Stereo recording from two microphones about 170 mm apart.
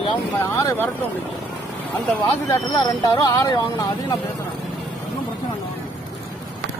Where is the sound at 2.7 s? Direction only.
20° left (ahead or behind).